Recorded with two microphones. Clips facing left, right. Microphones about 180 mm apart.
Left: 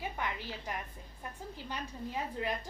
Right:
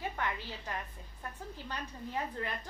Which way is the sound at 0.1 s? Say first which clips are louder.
Right 1 dB; 15° left (ahead or behind).